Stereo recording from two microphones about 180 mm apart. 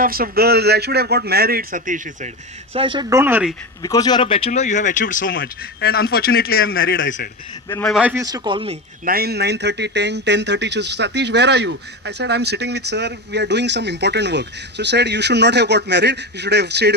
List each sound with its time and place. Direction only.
0.0 s a man's voice: 55° right (ahead or behind)
2.7 s speech: 25° right (ahead or behind); by 3.5 s 10° right (ahead or behind)
3.8 s speech: 20° left (ahead or behind); by 5.4 s 50° left (ahead or behind)
5.4 s speech: 60° left (ahead or behind)
7.9 s a man's voice: 5° right (ahead or behind)
8.1 s speech: 20° right (ahead or behind)
9.0 s speech: 60° right (ahead or behind)